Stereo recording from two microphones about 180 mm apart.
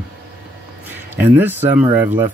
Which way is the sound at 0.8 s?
10° right (ahead or behind).